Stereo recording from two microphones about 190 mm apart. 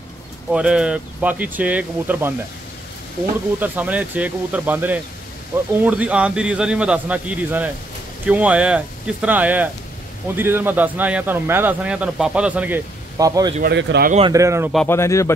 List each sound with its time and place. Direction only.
0.5 s speech: 5° right (ahead or behind)
3.5 s speech: 10° right (ahead or behind)
13.6 s speech: 65° right (ahead or behind)
14.2 s speech: 15° right (ahead or behind)
14.9 s speech: 15° left (ahead or behind)